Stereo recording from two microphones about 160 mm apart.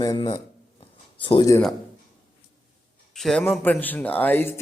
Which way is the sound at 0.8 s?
35° left (ahead or behind).